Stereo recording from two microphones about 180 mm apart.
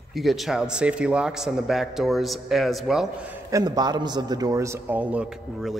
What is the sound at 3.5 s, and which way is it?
A man's voice, 20° right (ahead or behind).